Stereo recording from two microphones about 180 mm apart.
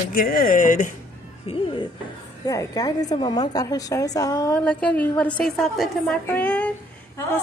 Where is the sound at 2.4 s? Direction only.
20° left (ahead or behind).